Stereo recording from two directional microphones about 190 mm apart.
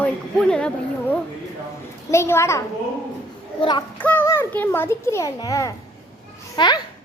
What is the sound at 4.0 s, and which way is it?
A child's voice, 10° left (ahead or behind).